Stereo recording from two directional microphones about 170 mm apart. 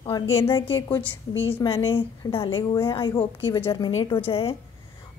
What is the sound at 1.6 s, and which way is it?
A woman's voice, 30° left (ahead or behind).